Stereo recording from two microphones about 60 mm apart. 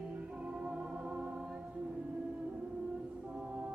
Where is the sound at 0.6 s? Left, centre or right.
Centre.